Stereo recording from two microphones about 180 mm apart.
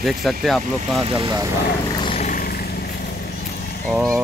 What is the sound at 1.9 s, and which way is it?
Vehicle, 30° left (ahead or behind).